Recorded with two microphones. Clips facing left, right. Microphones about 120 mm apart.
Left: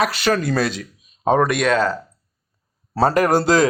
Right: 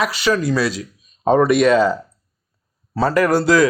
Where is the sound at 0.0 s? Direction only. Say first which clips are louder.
Right 1 dB; 55° left (ahead or behind).